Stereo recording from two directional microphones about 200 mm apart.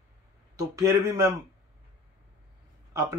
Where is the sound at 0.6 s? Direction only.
20° right (ahead or behind).